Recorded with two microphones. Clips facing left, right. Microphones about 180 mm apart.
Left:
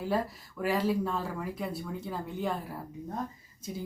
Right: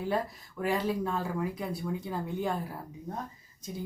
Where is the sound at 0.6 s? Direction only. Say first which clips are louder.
Left 1 dB; centre (ahead or behind).